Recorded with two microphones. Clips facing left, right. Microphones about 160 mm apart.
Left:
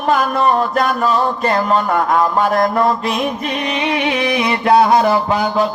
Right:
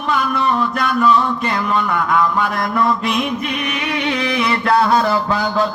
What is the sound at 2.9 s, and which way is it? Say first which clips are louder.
Music: left 1 dB; 40° left (ahead or behind).